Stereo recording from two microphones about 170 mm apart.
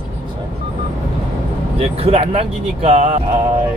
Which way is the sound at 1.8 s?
35° right (ahead or behind).